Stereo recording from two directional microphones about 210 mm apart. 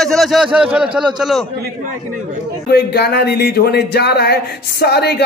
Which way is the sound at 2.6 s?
50° left (ahead or behind).